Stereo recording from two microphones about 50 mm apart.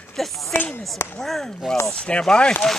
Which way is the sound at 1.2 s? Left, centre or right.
Centre.